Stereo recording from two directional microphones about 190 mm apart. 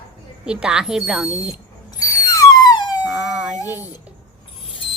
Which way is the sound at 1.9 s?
20° left (ahead or behind).